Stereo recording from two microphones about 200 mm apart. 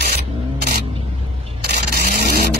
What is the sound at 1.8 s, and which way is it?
Vehicle, 50° right (ahead or behind).